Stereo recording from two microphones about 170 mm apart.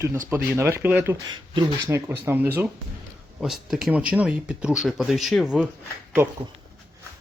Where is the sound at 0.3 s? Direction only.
15° right (ahead or behind).